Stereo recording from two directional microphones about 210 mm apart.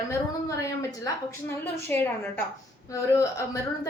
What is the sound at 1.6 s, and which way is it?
A woman's voice, 10° left (ahead or behind).